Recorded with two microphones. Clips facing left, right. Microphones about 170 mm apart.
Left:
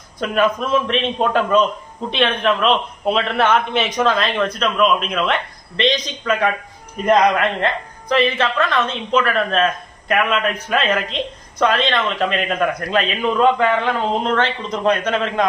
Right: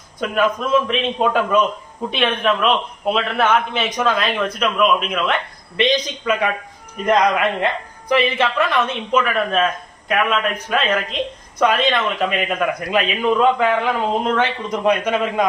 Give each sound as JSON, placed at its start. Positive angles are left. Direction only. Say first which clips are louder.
{"t": 0.2, "sound": "a man's voice", "louder": "left 1 dB", "side_deg": 0}